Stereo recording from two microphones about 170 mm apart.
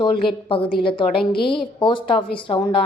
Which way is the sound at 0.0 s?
30° left (ahead or behind).